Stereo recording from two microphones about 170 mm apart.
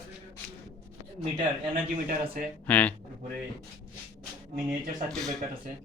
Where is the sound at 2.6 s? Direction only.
10° left (ahead or behind).